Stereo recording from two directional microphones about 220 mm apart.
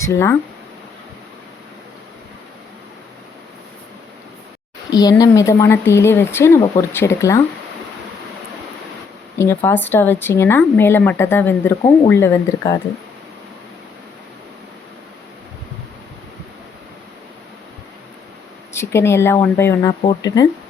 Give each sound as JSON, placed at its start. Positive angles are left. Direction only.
{"t": 0.0, "sound": "speech", "side_deg": 10}
{"t": 4.9, "sound": "speech", "side_deg": 15}
{"t": 9.4, "sound": "speech", "side_deg": 10}
{"t": 18.7, "sound": "speech", "side_deg": 10}